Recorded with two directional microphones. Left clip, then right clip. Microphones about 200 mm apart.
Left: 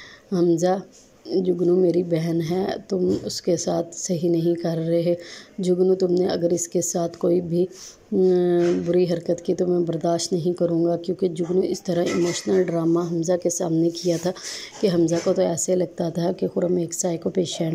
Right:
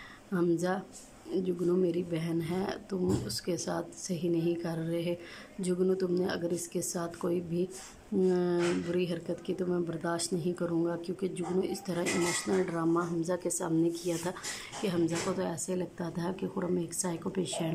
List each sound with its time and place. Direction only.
0.3 s speech: 20° left (ahead or behind)